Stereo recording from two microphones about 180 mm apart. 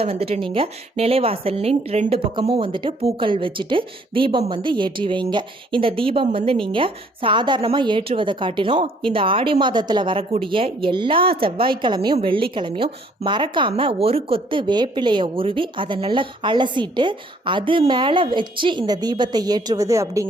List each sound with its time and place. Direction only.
0.0 s speech: 35° right (ahead or behind); by 20.2 s 15° right (ahead or behind)